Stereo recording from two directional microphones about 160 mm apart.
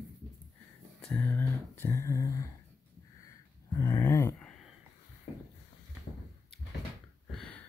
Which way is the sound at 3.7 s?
20° left (ahead or behind).